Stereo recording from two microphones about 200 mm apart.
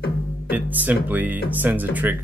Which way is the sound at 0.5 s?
10° right (ahead or behind).